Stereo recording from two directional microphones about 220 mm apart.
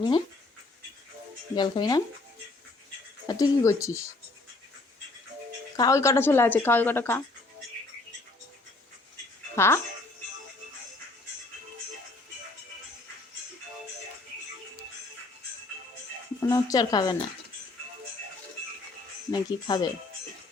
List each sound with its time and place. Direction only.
1.5 s speech: 20° left (ahead or behind)
3.2 s speech: 15° left (ahead or behind)
5.7 s speech: 15° left (ahead or behind)
9.6 s speech: 10° left (ahead or behind)
16.4 s speech: 15° left (ahead or behind)
19.3 s speech: 20° left (ahead or behind)